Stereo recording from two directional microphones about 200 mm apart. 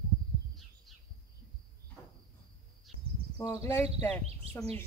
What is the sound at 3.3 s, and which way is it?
Speech, 15° left (ahead or behind).